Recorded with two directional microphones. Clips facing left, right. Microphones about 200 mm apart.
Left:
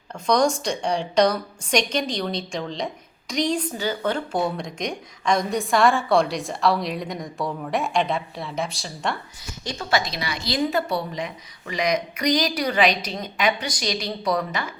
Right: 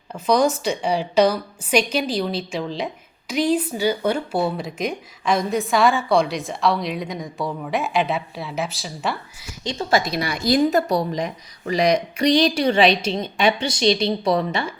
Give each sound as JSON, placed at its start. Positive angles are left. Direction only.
{"t": 0.1, "sound": "a woman's voice", "side_deg": -5}
{"t": 9.7, "sound": "a woman's voice", "side_deg": -20}
{"t": 10.1, "sound": "a woman's voice", "side_deg": -50}